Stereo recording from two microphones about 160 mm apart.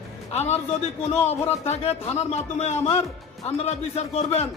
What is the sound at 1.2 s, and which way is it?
A man's voice, 40° left (ahead or behind).